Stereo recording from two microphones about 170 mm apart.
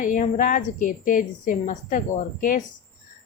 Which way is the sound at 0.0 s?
50° left (ahead or behind).